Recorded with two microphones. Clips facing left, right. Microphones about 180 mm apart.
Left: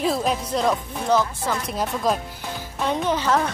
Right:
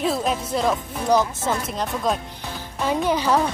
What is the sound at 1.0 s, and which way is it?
Speech, 15° right (ahead or behind).